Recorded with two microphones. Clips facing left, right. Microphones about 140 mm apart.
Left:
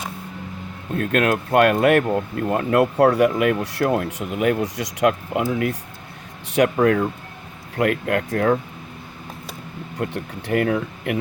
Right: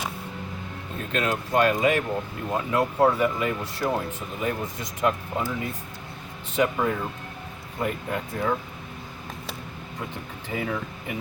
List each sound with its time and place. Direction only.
0.9 s speech: 60° left (ahead or behind)
10.0 s speech: 70° left (ahead or behind)